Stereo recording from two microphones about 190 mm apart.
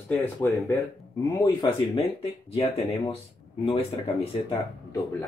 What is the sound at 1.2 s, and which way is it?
Speech, 20° left (ahead or behind).